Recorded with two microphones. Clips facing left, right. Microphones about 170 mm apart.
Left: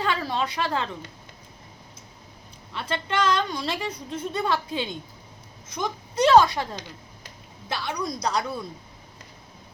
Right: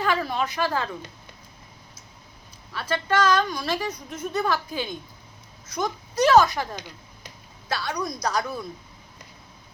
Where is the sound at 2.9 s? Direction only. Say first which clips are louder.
Right 3 dB; 20° left (ahead or behind).